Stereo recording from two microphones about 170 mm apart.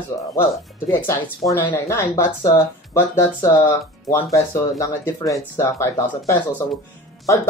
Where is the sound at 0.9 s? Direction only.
15° left (ahead or behind).